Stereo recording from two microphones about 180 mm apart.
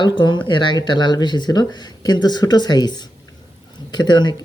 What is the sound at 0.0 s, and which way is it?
Speech, 25° left (ahead or behind).